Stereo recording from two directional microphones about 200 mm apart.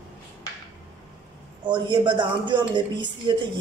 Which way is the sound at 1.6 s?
20° right (ahead or behind).